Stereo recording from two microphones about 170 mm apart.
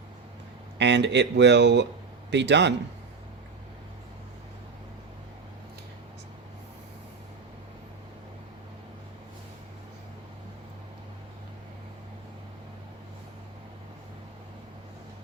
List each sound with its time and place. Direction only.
0.8 s speech: 90° right